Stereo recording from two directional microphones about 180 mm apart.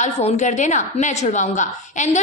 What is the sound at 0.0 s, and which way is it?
A woman's voice, 40° left (ahead or behind).